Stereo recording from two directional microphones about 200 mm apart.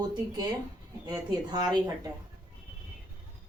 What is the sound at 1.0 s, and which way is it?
Speech, 20° right (ahead or behind).